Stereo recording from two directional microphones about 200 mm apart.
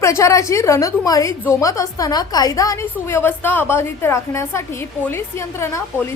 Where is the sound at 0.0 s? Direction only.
15° left (ahead or behind).